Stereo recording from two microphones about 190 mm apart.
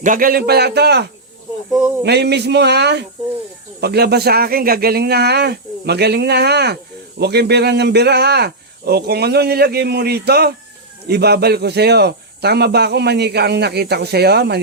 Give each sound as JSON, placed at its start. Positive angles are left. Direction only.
{"t": 0.0, "sound": "speech", "side_deg": -45}
{"t": 2.0, "sound": "speech", "side_deg": -60}